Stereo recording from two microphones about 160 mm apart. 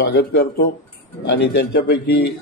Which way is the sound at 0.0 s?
90° left.